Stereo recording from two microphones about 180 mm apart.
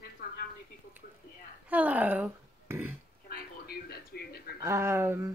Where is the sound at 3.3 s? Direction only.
60° left (ahead or behind).